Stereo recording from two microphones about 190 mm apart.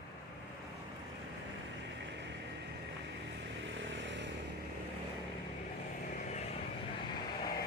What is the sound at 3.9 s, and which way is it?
Vehicle, 75° right (ahead or behind).